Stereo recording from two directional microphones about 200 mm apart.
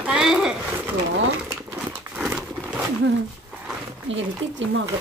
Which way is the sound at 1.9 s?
5° right (ahead or behind).